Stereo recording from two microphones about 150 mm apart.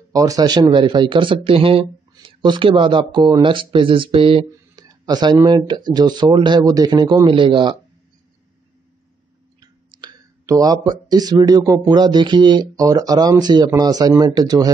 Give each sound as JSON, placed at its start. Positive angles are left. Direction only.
{"t": 0.1, "sound": "speech", "side_deg": -25}
{"t": 9.6, "sound": "speech", "side_deg": -30}